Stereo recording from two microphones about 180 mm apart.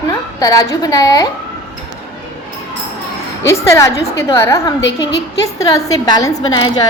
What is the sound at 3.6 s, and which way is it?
A woman's voice, 15° left (ahead or behind).